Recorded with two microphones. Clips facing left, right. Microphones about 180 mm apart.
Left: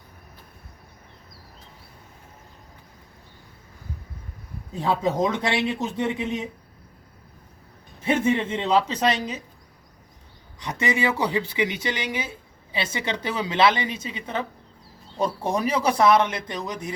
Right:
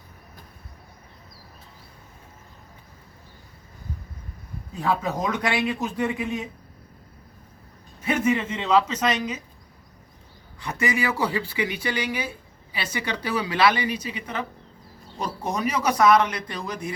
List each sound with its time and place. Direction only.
4.8 s speech: 25° left (ahead or behind)
8.0 s speech: 25° left (ahead or behind)
10.6 s speech: 20° left (ahead or behind)